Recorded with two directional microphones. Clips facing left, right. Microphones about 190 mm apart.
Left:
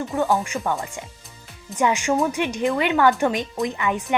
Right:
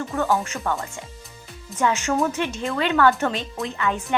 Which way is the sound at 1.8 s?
15° left (ahead or behind).